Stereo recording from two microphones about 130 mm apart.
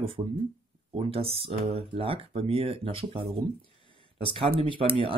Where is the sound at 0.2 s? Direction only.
40° right (ahead or behind).